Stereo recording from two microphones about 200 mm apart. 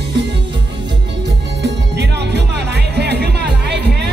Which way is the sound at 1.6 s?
60° right (ahead or behind).